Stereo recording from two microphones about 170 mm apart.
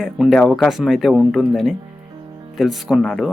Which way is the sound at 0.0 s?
Centre (ahead or behind).